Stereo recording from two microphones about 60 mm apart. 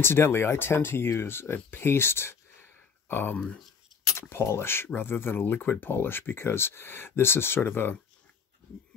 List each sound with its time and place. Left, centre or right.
0.0 s speech: left